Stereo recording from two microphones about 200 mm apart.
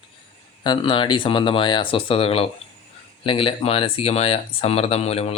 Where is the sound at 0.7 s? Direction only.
25° left (ahead or behind).